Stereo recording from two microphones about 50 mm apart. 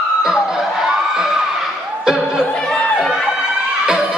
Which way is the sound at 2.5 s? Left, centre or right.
Centre.